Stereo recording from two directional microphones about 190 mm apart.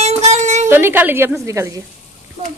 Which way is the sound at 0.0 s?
35° right (ahead or behind).